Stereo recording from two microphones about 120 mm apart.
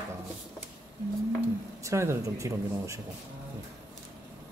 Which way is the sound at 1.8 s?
25° right (ahead or behind).